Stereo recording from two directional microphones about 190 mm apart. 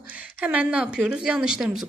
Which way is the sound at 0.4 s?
5° right (ahead or behind).